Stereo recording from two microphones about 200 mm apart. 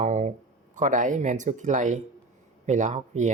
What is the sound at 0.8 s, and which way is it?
Speech, 40° right (ahead or behind).